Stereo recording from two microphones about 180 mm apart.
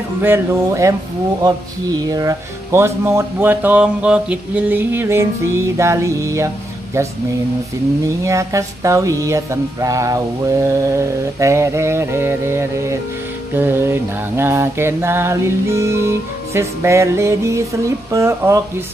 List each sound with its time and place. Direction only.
0.2 s mantra: 15° right (ahead or behind)
2.0 s mantra: 20° right (ahead or behind)
8.2 s mantra: 15° right (ahead or behind)